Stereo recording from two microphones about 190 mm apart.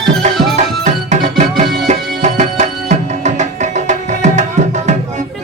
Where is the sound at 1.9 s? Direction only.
40° right (ahead or behind).